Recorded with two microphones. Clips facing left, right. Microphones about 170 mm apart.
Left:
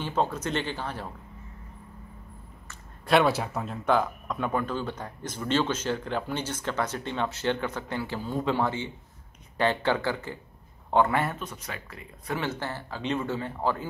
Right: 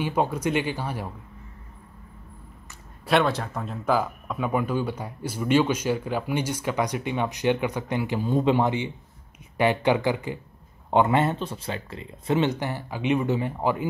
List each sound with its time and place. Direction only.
0.0 s speech: 10° right (ahead or behind)
3.1 s speech: 5° left (ahead or behind); by 13.8 s 15° right (ahead or behind)